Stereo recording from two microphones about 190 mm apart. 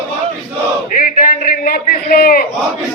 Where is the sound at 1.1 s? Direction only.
50° left (ahead or behind).